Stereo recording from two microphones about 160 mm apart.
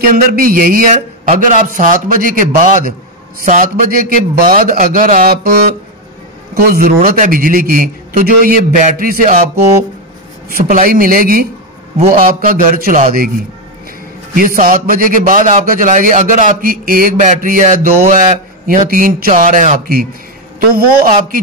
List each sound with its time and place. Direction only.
0.0 s a man's voice: 65° right (ahead or behind)
6.5 s a man's voice: 65° right (ahead or behind)
10.5 s a man's voice: 60° right (ahead or behind)
14.3 s a man's voice: 60° right (ahead or behind)